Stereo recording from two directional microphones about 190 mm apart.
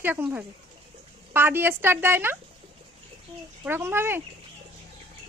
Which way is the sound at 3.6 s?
10° right (ahead or behind).